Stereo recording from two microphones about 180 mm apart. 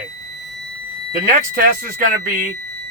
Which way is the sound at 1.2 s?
65° right (ahead or behind).